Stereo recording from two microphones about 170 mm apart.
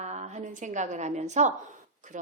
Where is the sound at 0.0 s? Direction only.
40° right (ahead or behind).